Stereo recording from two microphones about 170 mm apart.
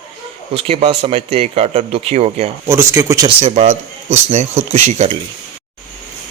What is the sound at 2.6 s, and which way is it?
Speech, 15° right (ahead or behind).